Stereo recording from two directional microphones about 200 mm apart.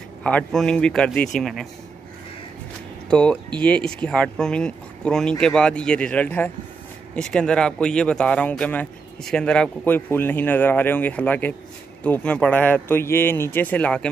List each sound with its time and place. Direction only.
0.2 s speech: 5° left (ahead or behind)
3.1 s speech: 5° left (ahead or behind)